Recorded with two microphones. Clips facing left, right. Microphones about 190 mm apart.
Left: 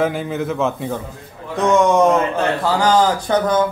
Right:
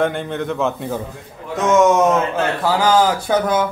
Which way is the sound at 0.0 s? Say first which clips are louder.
Even; 5° left (ahead or behind).